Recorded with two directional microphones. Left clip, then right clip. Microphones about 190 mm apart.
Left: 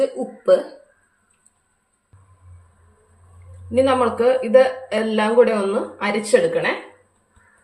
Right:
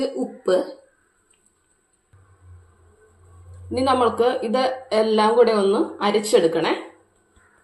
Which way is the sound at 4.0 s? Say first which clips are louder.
Left 2 dB; 35° right (ahead or behind).